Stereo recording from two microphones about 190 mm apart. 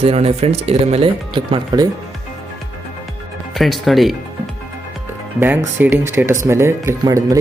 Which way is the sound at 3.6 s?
Centre (ahead or behind).